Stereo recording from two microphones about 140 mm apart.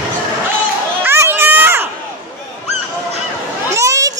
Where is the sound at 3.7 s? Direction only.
20° right (ahead or behind).